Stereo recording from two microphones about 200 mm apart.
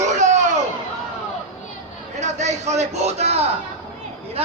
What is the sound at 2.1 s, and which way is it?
A man's voice, 35° right (ahead or behind).